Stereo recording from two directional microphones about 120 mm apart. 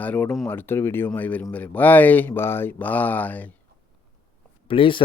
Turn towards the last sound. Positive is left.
turn(degrees=45)  # may be behind; listen again after turning